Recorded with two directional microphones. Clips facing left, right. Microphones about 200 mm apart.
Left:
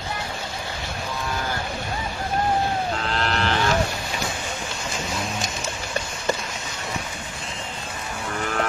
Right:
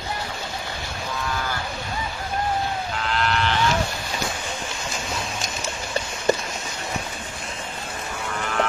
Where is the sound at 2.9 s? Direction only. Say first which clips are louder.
Right 1 dB; 35° left (ahead or behind).